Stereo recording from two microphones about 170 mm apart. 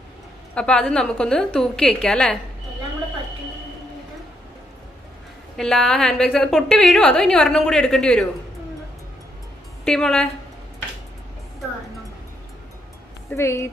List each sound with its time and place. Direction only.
0.6 s a woman's voice: 5° left (ahead or behind)
5.6 s a woman's voice: 5° left (ahead or behind)
9.8 s a woman's voice: 5° left (ahead or behind)
13.4 s a woman's voice: 15° left (ahead or behind)